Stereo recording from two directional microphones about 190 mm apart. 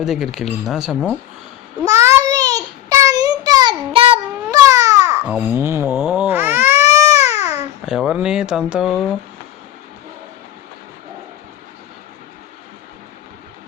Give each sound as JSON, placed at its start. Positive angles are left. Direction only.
{"t": 0.0, "sound": "speech", "side_deg": 0}
{"t": 1.8, "sound": "child singing", "side_deg": -15}
{"t": 4.5, "sound": "baby cry", "side_deg": -15}
{"t": 5.5, "sound": "cat", "side_deg": -15}
{"t": 7.9, "sound": "speech", "side_deg": -5}